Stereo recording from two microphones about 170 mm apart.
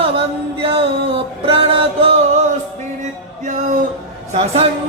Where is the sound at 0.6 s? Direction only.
35° right (ahead or behind).